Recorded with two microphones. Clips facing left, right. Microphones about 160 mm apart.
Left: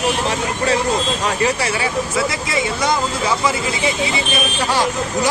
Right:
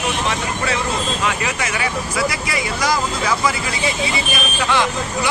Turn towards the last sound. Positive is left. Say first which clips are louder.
# even
turn(degrees=35)  # may be behind; listen again after turning